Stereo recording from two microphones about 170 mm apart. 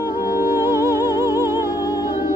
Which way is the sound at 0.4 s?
15° right (ahead or behind).